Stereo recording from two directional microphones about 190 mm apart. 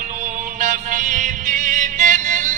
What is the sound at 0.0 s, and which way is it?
Music, 40° right (ahead or behind).